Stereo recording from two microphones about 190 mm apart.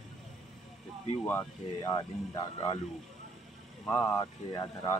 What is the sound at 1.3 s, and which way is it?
Speech, 15° left (ahead or behind).